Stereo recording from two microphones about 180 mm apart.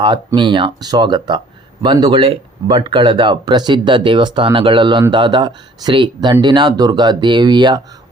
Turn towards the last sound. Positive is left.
turn(degrees=-25)  # may be behind; listen again after turning